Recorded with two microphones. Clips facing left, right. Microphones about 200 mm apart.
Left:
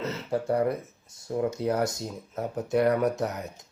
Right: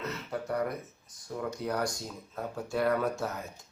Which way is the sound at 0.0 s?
30° left (ahead or behind).